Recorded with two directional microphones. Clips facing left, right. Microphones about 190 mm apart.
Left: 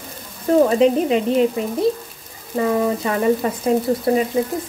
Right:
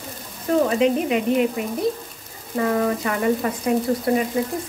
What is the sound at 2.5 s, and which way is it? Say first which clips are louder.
Speech: left 2 dB; 25° left (ahead or behind).